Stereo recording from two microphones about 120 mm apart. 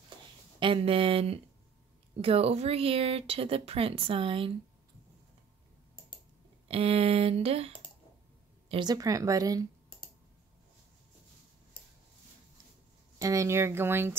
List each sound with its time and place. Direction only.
0.6 s speech: 45° right (ahead or behind)
6.7 s speech: 55° right (ahead or behind)
8.8 s speech: 30° right (ahead or behind)
13.2 s speech: 25° right (ahead or behind)